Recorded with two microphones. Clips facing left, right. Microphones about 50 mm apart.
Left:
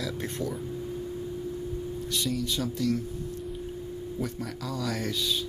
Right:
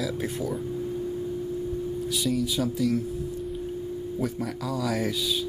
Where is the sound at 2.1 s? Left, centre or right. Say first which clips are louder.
Right 3 dB; centre.